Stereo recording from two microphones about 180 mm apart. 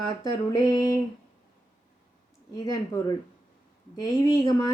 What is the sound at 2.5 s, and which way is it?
Speech, 25° left (ahead or behind).